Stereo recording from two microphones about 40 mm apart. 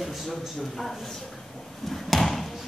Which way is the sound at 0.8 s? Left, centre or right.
Centre.